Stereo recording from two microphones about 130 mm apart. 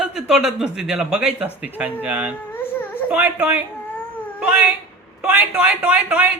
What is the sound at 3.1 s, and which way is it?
Speech, 10° right (ahead or behind).